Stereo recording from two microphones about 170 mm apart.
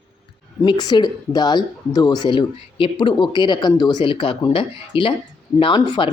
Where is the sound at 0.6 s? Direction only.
25° left (ahead or behind).